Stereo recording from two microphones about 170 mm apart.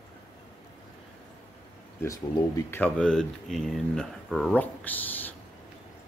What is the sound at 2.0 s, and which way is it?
Speech, 20° left (ahead or behind).